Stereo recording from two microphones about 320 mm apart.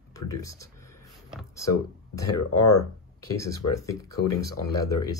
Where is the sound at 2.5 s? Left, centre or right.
Left.